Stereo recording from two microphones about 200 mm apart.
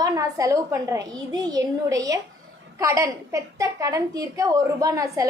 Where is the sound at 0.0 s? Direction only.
15° right (ahead or behind).